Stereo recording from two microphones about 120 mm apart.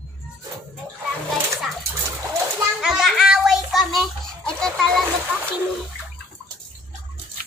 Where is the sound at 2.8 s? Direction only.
Centre (ahead or behind).